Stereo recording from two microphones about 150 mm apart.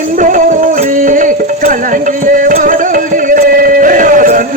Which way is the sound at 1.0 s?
60° right (ahead or behind).